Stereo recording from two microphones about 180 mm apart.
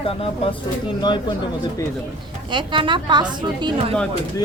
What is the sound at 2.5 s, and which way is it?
A woman's voice, 25° right (ahead or behind).